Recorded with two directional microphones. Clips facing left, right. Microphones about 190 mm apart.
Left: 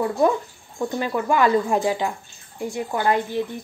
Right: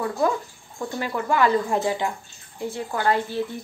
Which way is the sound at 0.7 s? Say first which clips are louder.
Left 4 dB; 20° left (ahead or behind).